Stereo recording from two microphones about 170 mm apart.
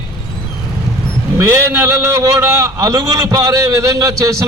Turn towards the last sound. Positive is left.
turn(degrees=-20)  # may be behind; listen again after turning